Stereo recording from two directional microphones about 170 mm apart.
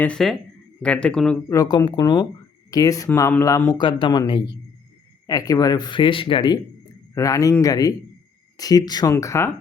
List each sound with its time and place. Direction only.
0.0 s speech: 5° left (ahead or behind)
1.5 s speech: 20° left (ahead or behind)
3.7 s speech: 25° left (ahead or behind)